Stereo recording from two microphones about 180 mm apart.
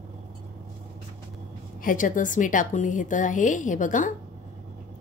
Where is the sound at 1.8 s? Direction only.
50° left (ahead or behind).